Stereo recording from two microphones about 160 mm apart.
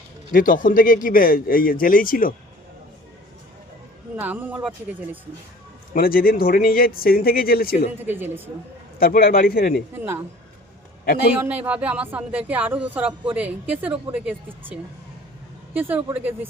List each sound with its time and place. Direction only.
0.3 s speech: 60° left (ahead or behind)
4.2 s speech: 10° right (ahead or behind)
5.9 s speech: 65° left (ahead or behind)
7.9 s speech: 10° right (ahead or behind)
9.0 s speech: 65° left (ahead or behind)
9.9 s speech: 15° right (ahead or behind)
11.4 s speech: 10° right (ahead or behind)